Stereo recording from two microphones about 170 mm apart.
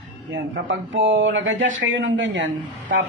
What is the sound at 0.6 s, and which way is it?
Speech, 90° right.